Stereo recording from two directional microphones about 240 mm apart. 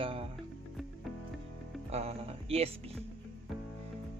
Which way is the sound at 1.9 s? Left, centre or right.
Right.